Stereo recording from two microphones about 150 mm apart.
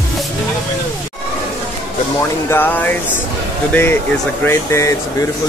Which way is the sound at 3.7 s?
15° left (ahead or behind).